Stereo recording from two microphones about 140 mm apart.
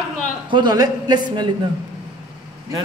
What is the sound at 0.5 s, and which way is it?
Speech, 30° right (ahead or behind).